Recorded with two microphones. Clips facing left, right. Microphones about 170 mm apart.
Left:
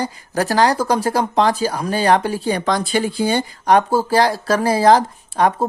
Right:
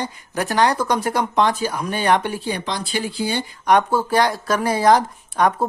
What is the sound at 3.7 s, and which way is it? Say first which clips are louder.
Speech: left 2 dB; 30° left (ahead or behind).